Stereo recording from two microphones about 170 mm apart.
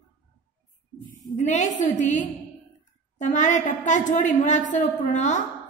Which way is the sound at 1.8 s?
45° left (ahead or behind).